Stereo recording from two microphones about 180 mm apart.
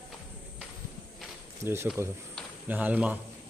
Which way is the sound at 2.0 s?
15° right (ahead or behind).